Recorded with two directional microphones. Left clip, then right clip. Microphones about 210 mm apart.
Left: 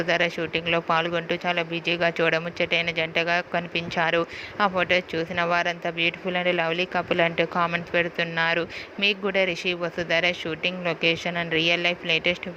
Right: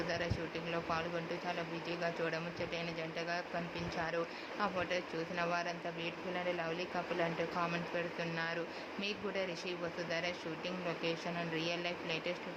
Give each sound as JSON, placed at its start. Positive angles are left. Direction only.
{"t": 0.1, "sound": "speech", "side_deg": 35}